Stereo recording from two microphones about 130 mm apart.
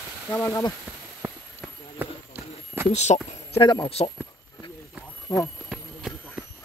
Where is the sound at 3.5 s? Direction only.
40° left (ahead or behind).